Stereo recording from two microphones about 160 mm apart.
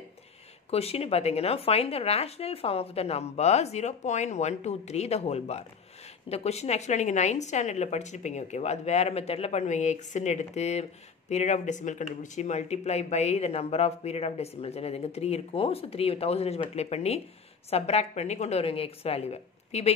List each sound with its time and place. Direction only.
0.7 s a woman's voice: 40° left (ahead or behind)